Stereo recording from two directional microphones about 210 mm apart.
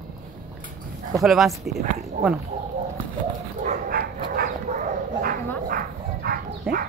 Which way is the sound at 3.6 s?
45° right (ahead or behind).